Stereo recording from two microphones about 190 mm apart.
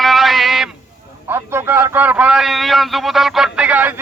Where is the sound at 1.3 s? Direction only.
10° right (ahead or behind).